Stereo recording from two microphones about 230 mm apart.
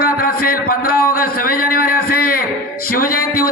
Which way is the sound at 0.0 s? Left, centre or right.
Left.